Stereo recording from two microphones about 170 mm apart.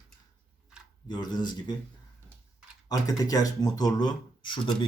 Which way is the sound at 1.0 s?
25° left (ahead or behind).